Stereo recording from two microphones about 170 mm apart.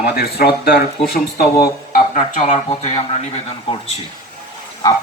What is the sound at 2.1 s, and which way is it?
A man's voice, 45° left (ahead or behind).